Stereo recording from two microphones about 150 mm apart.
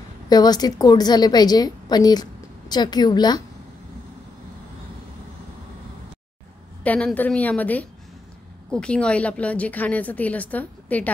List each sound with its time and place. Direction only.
0.3 s a woman's voice: 25° left (ahead or behind)
6.8 s a woman's voice: 10° left (ahead or behind)